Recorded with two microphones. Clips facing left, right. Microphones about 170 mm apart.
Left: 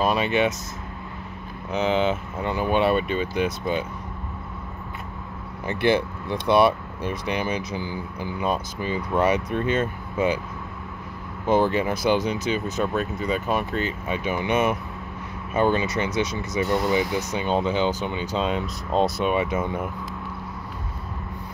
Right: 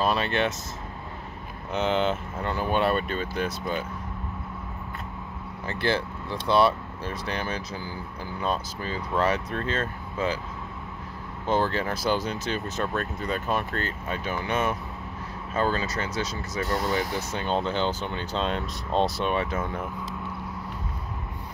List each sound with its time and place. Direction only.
0.0 s speech: 10° left (ahead or behind)
1.7 s speech: centre (ahead or behind)
5.7 s speech: 15° left (ahead or behind)
11.4 s speech: 15° left (ahead or behind)
17.3 s speech: 10° left (ahead or behind)